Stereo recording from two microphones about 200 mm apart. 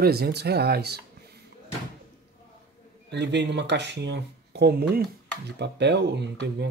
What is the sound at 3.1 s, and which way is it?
Speech, 60° right (ahead or behind).